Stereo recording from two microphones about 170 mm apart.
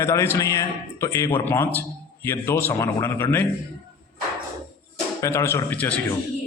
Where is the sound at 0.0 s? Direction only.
15° left (ahead or behind).